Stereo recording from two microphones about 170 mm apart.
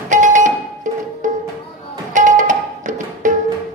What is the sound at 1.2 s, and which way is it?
Music, 50° right (ahead or behind).